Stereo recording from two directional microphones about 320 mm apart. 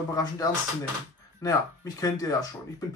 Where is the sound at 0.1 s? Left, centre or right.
Centre.